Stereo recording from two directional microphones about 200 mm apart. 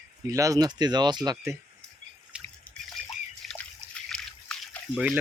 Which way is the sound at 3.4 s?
5° left (ahead or behind).